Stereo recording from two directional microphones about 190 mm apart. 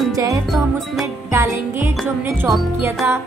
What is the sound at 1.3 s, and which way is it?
Music, 15° right (ahead or behind).